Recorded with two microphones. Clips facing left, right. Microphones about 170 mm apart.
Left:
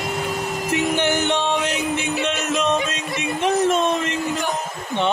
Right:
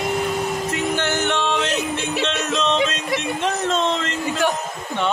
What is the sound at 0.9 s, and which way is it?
Music, 15° left (ahead or behind).